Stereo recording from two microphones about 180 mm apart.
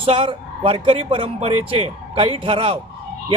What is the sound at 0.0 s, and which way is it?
A man's voice, 30° right (ahead or behind).